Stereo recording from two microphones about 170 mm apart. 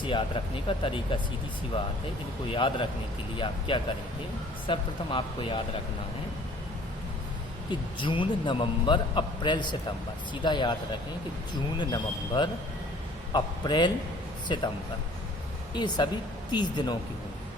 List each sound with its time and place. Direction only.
0.0 s speech: 30° left (ahead or behind)
2.5 s a man's voice: 30° left (ahead or behind)
7.7 s a man's voice: 30° left (ahead or behind)
11.8 s a man's voice: 25° left (ahead or behind)
15.7 s a man's voice: 25° left (ahead or behind)